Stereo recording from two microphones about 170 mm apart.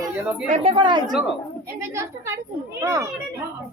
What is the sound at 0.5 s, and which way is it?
A woman's voice, 35° right (ahead or behind).